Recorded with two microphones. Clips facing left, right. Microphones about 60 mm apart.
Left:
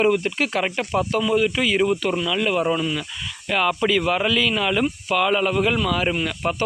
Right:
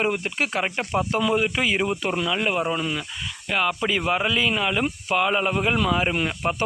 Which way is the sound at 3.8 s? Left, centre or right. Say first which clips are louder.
Left 3 dB; centre.